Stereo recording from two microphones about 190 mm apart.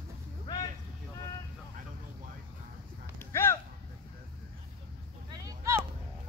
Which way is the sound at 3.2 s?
15° left (ahead or behind).